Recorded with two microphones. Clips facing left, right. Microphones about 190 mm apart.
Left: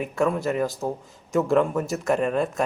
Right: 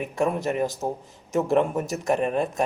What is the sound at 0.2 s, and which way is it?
A man's voice, 20° right (ahead or behind).